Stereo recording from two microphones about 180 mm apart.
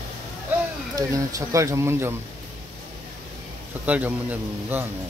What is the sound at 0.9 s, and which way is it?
Speech, 15° right (ahead or behind).